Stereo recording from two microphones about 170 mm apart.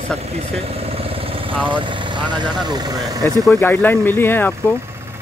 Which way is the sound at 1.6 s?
30° right (ahead or behind).